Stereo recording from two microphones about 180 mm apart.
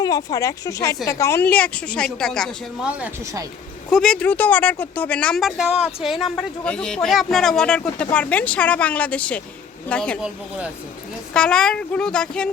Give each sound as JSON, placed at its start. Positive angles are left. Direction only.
{"t": 0.0, "sound": "a woman's voice", "side_deg": 20}
{"t": 3.9, "sound": "a woman's voice", "side_deg": 5}
{"t": 10.2, "sound": "speech", "side_deg": -5}